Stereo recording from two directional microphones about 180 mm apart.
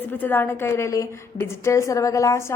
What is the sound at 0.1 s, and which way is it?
A woman's voice, 10° left (ahead or behind).